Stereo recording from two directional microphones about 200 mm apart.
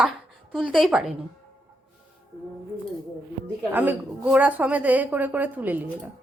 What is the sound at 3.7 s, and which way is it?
A woman's voice, 10° right (ahead or behind).